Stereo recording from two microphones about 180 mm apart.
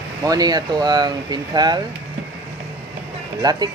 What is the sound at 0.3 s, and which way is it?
Speech, 20° right (ahead or behind).